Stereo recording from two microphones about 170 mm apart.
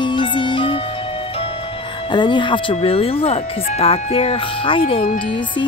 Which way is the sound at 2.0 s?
30° left (ahead or behind).